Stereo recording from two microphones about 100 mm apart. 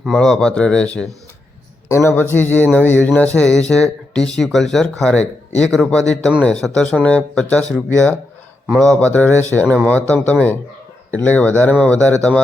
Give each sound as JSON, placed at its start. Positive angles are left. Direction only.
{"t": 0.1, "sound": "speech", "side_deg": 10}
{"t": 1.9, "sound": "a man's voice", "side_deg": 30}
{"t": 2.3, "sound": "speech", "side_deg": 15}
{"t": 9.0, "sound": "speech", "side_deg": 15}